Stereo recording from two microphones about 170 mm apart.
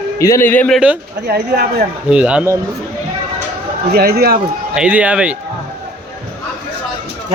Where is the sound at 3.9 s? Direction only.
65° right (ahead or behind).